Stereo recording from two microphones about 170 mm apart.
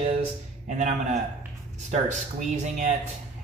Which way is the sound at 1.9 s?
45° right (ahead or behind).